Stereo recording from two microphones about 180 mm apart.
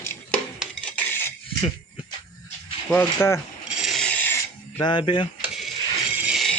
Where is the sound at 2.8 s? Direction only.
10° left (ahead or behind).